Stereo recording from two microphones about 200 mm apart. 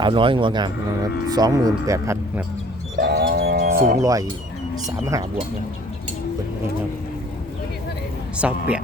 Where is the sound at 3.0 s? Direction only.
50° right (ahead or behind).